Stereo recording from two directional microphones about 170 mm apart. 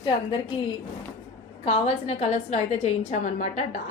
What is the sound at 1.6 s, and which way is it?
A woman's voice, 40° left (ahead or behind).